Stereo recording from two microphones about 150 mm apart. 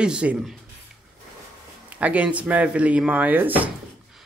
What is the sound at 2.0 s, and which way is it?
Speech, 10° right (ahead or behind).